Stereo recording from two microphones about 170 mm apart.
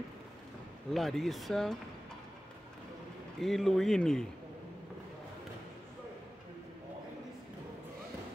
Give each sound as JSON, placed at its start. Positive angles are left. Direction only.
{"t": 0.9, "sound": "a man's voice", "side_deg": 0}
{"t": 3.3, "sound": "a man's voice", "side_deg": 0}